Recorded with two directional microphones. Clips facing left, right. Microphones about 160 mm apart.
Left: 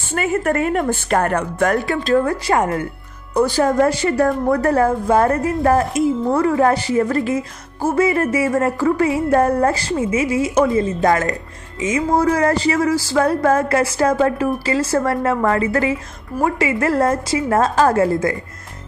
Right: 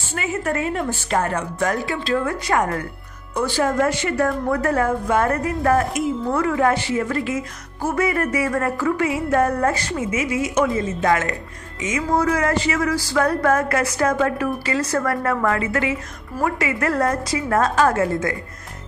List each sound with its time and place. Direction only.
0.1 s speech: 55° left (ahead or behind)
2.2 s music: 30° left (ahead or behind)
3.3 s a woman's voice: 40° left (ahead or behind)
11.8 s music: 30° left (ahead or behind)